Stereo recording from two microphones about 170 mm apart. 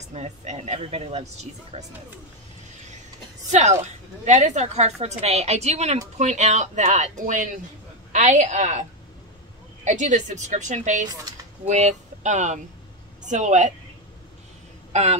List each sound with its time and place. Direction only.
0.1 s speech: 40° right (ahead or behind)
3.5 s a woman's voice: 45° right (ahead or behind)
9.8 s a woman's voice: 45° right (ahead or behind)
14.9 s speech: 40° right (ahead or behind)